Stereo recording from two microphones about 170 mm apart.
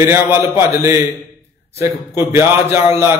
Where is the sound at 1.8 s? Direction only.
15° right (ahead or behind).